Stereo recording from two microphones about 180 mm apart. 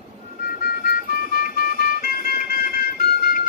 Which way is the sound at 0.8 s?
55° left (ahead or behind).